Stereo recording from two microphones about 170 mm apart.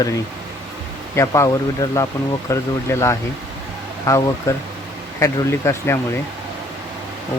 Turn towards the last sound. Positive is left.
turn(degrees=15)  # may be behind; listen again after turning